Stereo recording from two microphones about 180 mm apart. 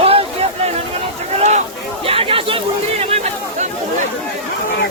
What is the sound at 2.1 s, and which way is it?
Chatter, 30° right (ahead or behind).